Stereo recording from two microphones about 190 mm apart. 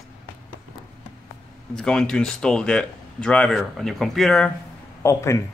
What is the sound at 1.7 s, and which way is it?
Speech, 5° left (ahead or behind).